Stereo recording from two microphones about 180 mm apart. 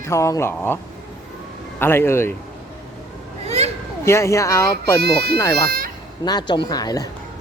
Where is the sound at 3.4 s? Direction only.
35° right (ahead or behind).